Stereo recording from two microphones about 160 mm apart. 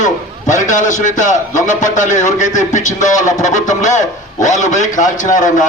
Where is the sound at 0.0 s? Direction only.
50° left (ahead or behind).